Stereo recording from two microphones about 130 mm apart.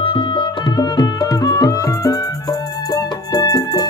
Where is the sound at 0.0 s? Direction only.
40° left (ahead or behind).